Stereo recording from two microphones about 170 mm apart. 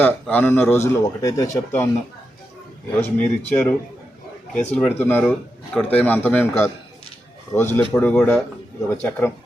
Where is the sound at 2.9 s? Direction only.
10° left (ahead or behind).